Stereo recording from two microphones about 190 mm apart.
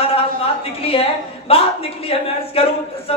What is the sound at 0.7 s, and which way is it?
A man's voice, 30° left (ahead or behind).